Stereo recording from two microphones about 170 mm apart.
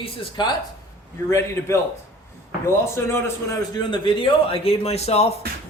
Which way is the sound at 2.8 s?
15° left (ahead or behind).